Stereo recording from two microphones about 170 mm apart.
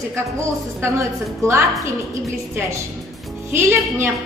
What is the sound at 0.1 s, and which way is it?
A woman's voice, 15° right (ahead or behind).